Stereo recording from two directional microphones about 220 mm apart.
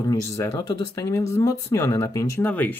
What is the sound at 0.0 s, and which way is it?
Speech, 15° left (ahead or behind).